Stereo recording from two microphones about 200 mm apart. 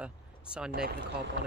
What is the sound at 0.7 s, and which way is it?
Speech, 50° right (ahead or behind).